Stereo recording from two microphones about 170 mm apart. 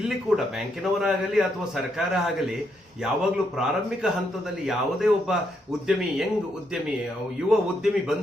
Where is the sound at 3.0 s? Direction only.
5° right (ahead or behind).